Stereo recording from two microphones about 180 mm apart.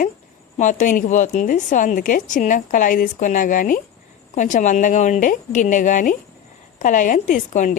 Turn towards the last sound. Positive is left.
turn(degrees=45)  # may be behind; listen again after turning